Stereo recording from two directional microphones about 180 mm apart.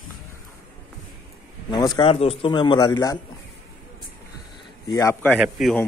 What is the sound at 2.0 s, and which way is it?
A man's voice, 30° left (ahead or behind).